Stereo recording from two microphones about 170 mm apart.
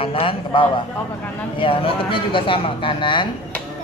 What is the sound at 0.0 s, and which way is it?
A man's voice, 35° left (ahead or behind).